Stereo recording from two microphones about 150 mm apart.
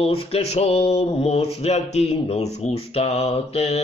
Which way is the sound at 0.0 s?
40° left (ahead or behind).